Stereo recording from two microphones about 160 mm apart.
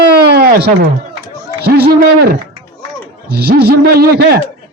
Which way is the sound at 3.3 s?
85° right.